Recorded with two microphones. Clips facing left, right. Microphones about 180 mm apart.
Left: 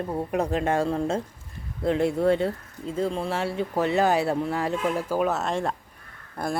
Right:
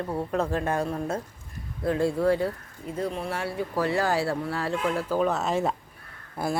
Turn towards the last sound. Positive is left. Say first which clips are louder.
# even
turn(degrees=-5)  # may be behind; listen again after turning